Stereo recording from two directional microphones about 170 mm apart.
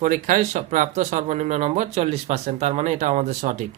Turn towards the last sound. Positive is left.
turn(degrees=-45)  # may be behind; listen again after turning